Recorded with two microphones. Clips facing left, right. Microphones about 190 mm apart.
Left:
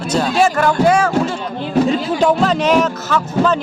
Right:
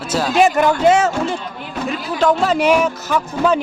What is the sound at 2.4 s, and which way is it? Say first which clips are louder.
Speech: left 1 dB; 5° right (ahead or behind).